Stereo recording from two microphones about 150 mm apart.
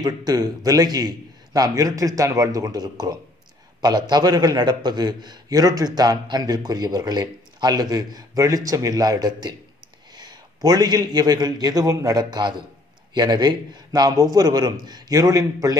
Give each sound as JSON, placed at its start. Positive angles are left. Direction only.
{"t": 0.0, "sound": "a man's voice", "side_deg": -25}